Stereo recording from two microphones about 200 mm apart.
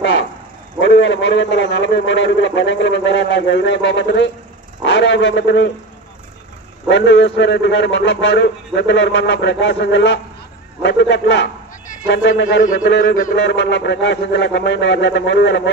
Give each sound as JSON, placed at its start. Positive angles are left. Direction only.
{"t": 0.7, "sound": "a man's voice", "side_deg": 60}
{"t": 4.8, "sound": "a sound", "side_deg": 65}
{"t": 6.9, "sound": "a man's voice", "side_deg": 65}